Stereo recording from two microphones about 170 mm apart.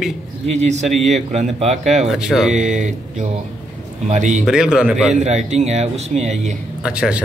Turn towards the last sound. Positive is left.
turn(degrees=-5)  # may be behind; listen again after turning